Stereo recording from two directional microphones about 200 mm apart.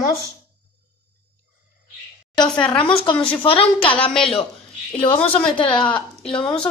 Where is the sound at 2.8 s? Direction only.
25° left (ahead or behind).